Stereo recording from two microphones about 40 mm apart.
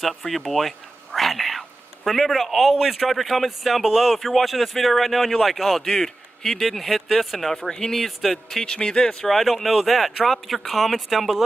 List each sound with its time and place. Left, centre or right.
0.5 s a sound: centre
2.7 s speech: centre
5.9 s speech: centre
8.6 s speech: left
9.3 s speech: centre